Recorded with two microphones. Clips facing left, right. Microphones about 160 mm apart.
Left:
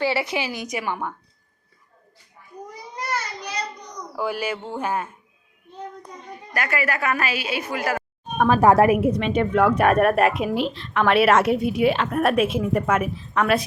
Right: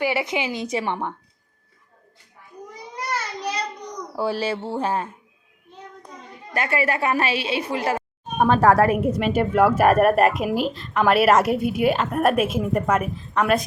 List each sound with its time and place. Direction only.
0.0 s a woman's voice: 20° right (ahead or behind)
4.1 s mantra: 30° right (ahead or behind)
6.5 s a woman's voice: 25° right (ahead or behind)
8.6 s a woman's voice: 20° left (ahead or behind)
9.0 s speech: centre (ahead or behind)